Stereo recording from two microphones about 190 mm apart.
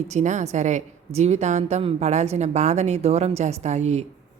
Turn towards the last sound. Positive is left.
turn(degrees=-35)  # may be behind; listen again after turning